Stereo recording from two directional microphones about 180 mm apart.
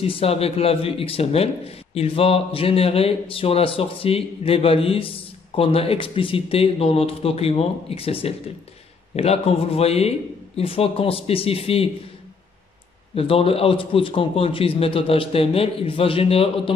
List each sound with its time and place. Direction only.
0.0 s speech: 30° left (ahead or behind)
13.1 s speech: 30° left (ahead or behind)